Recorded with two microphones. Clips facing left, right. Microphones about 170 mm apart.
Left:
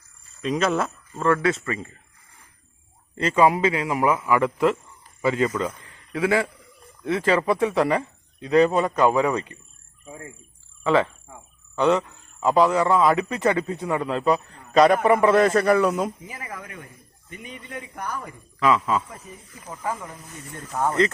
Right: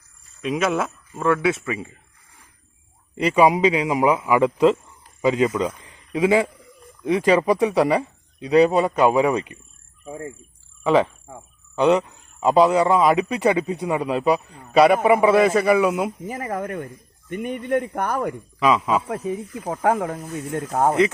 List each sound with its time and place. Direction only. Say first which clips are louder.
0.4 s a man's voice: right 1 dB; 5° right (ahead or behind)
3.2 s a man's voice: right 2 dB; 15° right (ahead or behind)
10.1 s speech: right 7 dB; 30° right (ahead or behind)
10.8 s a man's voice: right 3 dB; 15° right (ahead or behind)
16.2 s speech: right 10 dB; 45° right (ahead or behind); by 18.3 s 65° right (ahead or behind)
18.6 s a man's voice: right 2 dB; 15° right (ahead or behind)
19.0 s speech: right 16 dB; 90° right
20.1 s speech: right 12 dB; 55° right (ahead or behind)